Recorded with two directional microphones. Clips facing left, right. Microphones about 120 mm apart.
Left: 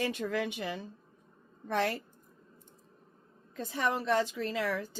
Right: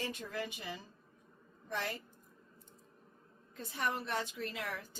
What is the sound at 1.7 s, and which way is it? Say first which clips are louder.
Speech: left 9 dB; 85° left.